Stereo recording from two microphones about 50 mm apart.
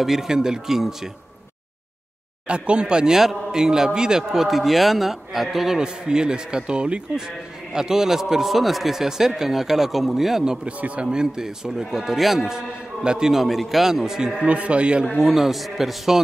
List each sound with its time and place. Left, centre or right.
0.0 s a man's voice: centre
2.4 s a man's voice: right; by 12.4 s centre
12.4 s a man's voice: centre
13.3 s a man's voice: centre
14.4 s speech: right
15.1 s a man's voice: centre